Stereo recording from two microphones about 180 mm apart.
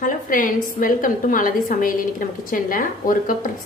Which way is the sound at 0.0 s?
50° left (ahead or behind).